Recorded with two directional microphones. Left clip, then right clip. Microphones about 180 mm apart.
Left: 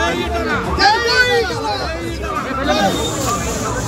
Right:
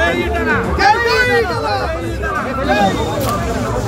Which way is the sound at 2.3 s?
25° left (ahead or behind).